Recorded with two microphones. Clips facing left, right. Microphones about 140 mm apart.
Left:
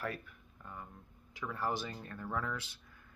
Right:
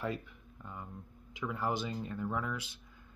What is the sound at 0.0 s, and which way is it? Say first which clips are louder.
Speech: right 3 dB; 20° right (ahead or behind).